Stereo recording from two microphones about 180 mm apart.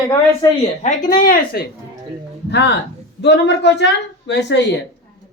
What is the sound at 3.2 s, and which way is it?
A woman's voice, 75° left (ahead or behind).